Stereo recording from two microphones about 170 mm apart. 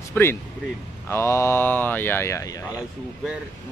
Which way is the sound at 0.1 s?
15° left (ahead or behind).